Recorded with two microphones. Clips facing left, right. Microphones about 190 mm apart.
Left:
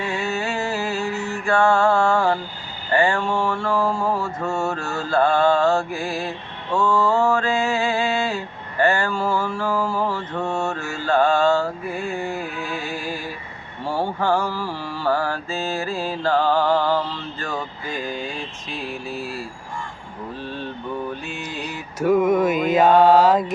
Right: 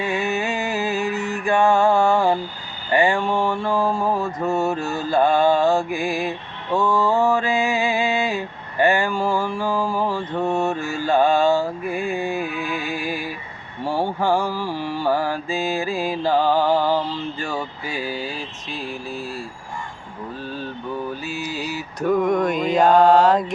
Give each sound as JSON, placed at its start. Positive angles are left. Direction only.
{"t": 0.0, "sound": "music", "side_deg": -20}
{"t": 2.9, "sound": "mantra", "side_deg": -15}
{"t": 21.1, "sound": "mantra", "side_deg": -5}
{"t": 22.0, "sound": "mantra", "side_deg": 5}